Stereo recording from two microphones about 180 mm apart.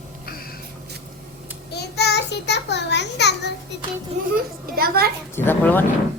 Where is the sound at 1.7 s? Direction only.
65° left (ahead or behind).